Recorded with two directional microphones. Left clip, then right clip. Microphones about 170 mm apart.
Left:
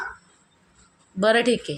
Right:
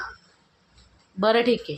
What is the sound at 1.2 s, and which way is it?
Speech, 5° right (ahead or behind).